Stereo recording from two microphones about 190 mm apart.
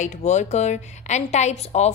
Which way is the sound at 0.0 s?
40° left (ahead or behind).